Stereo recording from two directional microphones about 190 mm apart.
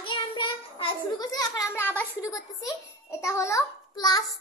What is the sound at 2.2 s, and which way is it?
Child singing, 20° left (ahead or behind).